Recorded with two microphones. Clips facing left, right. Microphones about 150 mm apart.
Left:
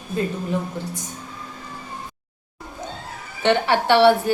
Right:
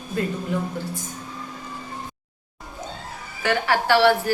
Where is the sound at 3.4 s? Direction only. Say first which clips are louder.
Left 3 dB; 25° left (ahead or behind).